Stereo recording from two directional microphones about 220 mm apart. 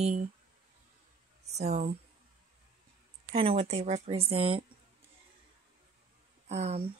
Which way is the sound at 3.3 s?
25° right (ahead or behind).